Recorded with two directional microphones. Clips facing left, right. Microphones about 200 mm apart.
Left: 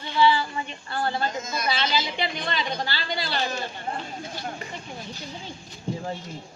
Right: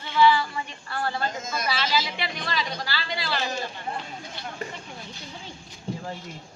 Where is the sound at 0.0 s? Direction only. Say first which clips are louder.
Right 1 dB; 25° left (ahead or behind).